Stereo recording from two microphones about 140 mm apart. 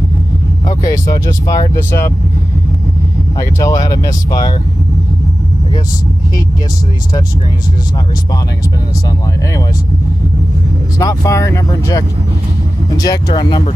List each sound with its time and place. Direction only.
0.7 s speech: 25° left (ahead or behind)
3.3 s speech: 25° left (ahead or behind)
11.0 s speech: 25° left (ahead or behind)